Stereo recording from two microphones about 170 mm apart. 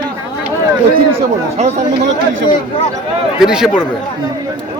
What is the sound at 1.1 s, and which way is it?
Speech, 40° right (ahead or behind).